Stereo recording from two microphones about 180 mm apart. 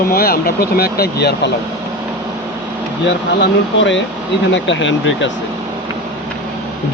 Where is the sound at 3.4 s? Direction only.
90° left.